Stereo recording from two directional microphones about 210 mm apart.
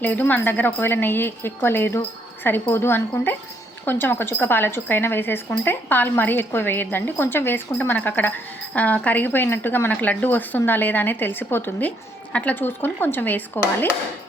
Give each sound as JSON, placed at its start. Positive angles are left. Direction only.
{"t": 0.0, "sound": "speech", "side_deg": 10}